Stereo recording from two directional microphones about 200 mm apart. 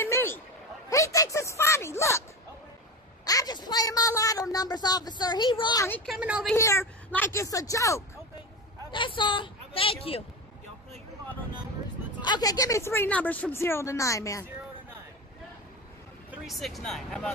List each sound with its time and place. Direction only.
0.0 s a sound: 10° left (ahead or behind)
0.8 s a woman's voice: 15° left (ahead or behind)
3.3 s a woman's voice: 20° left (ahead or behind)
5.9 s a woman's voice: 10° left (ahead or behind)
6.1 s a woman's voice: 5° right (ahead or behind)
6.5 s a woman's voice: 15° left (ahead or behind)
12.2 s a woman's voice: 20° left (ahead or behind)
16.3 s speech: centre (ahead or behind)